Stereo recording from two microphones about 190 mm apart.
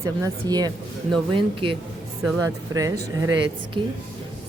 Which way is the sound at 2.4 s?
15° right (ahead or behind).